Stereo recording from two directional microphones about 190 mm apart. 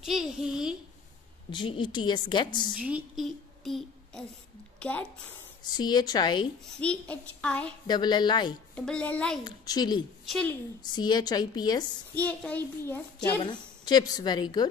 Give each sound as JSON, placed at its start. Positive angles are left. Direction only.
{"t": 0.0, "sound": "a child's voice", "side_deg": 0}
{"t": 1.5, "sound": "a woman's voice", "side_deg": 25}
{"t": 2.7, "sound": "speech", "side_deg": -5}
{"t": 5.6, "sound": "a woman's voice", "side_deg": 20}
{"t": 6.6, "sound": "a child's voice", "side_deg": 5}
{"t": 7.8, "sound": "a woman's voice", "side_deg": 20}
{"t": 8.7, "sound": "a child's voice", "side_deg": 5}
{"t": 9.4, "sound": "a woman's voice", "side_deg": 20}
{"t": 10.2, "sound": "a woman's voice", "side_deg": 5}
{"t": 10.8, "sound": "a woman's voice", "side_deg": 20}
{"t": 12.1, "sound": "a child's voice", "side_deg": 10}
{"t": 13.5, "sound": "a woman's voice", "side_deg": 20}